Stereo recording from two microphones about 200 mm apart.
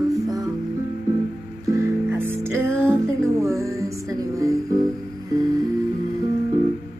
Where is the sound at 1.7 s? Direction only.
10° right (ahead or behind).